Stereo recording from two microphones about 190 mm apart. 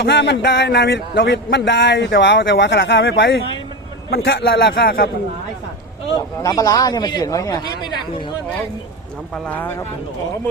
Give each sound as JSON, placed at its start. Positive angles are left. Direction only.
{"t": 0.0, "sound": "speech", "side_deg": 65}
{"t": 4.1, "sound": "a man's voice", "side_deg": 60}
{"t": 6.1, "sound": "a man's voice", "side_deg": 20}
{"t": 9.3, "sound": "speech", "side_deg": 5}